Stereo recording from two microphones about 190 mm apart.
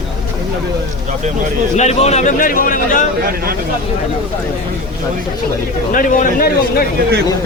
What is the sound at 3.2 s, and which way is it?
Speech, 50° right (ahead or behind).